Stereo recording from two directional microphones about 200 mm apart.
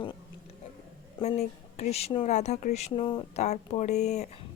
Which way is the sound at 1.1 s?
30° left (ahead or behind).